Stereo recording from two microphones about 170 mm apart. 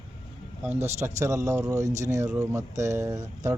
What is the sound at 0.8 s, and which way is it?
Speech, 15° right (ahead or behind).